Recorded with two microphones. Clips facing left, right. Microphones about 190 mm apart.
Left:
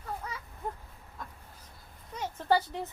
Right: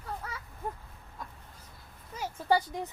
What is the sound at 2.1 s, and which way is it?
Speech, 10° right (ahead or behind).